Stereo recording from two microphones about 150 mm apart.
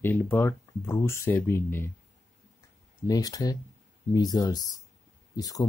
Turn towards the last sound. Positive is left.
turn(degrees=25)  # may be behind; listen again after turning